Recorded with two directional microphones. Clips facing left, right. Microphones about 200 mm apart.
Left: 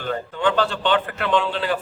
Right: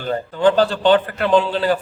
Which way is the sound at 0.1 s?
35° right (ahead or behind).